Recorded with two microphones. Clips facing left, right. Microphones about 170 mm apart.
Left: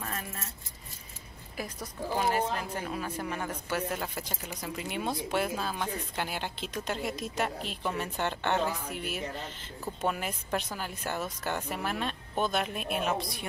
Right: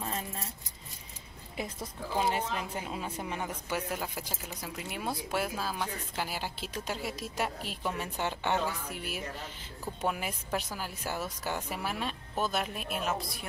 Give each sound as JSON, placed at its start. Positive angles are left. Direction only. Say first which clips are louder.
{"t": 0.0, "sound": "keys jangling", "louder": "right 2 dB", "side_deg": -25}
{"t": 1.6, "sound": "a woman's voice", "louder": "left 1 dB", "side_deg": -25}
{"t": 10.0, "sound": "speech", "louder": "left 1 dB", "side_deg": -5}